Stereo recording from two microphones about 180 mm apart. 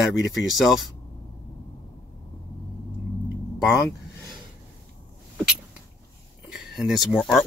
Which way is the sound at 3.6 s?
Centre (ahead or behind).